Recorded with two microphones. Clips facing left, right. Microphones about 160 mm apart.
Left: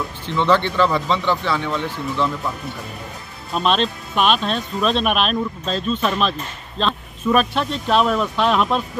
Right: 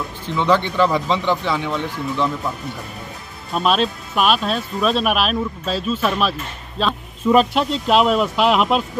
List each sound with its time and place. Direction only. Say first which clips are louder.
0.4 s speech: even; 10° right (ahead or behind)
1.7 s speech: right 1 dB; 5° right (ahead or behind)
3.5 s speech: right 1 dB; 5° right (ahead or behind)
7.3 s speech: right 4 dB; 15° right (ahead or behind)